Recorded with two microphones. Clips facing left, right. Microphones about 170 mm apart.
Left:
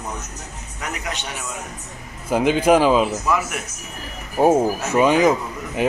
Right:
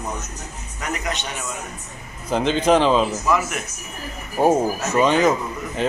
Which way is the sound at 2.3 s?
10° left (ahead or behind).